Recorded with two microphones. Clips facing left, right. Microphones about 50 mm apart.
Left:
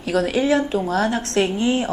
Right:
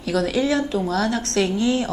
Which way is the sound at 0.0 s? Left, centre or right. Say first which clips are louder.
Left 1 dB; left.